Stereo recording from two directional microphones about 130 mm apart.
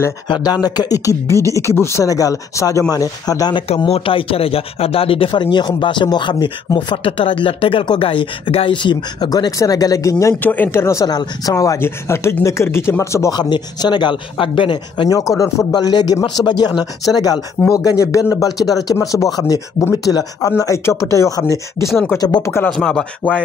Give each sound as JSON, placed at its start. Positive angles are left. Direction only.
{"t": 0.3, "sound": "speech", "side_deg": 30}
{"t": 3.6, "sound": "speech", "side_deg": 50}
{"t": 10.4, "sound": "speech", "side_deg": 15}
{"t": 13.4, "sound": "speech", "side_deg": 35}
{"t": 15.0, "sound": "speech", "side_deg": 25}
{"t": 22.7, "sound": "speech", "side_deg": 5}